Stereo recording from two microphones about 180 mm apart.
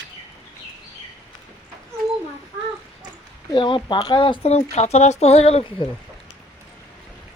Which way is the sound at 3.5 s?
25° left (ahead or behind).